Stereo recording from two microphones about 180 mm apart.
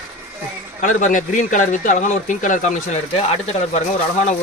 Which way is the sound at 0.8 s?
45° left (ahead or behind).